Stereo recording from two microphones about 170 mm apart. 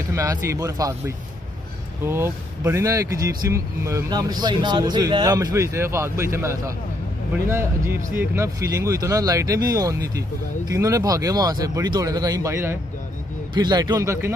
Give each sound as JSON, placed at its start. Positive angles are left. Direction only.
{"t": 0.1, "sound": "speech", "side_deg": -20}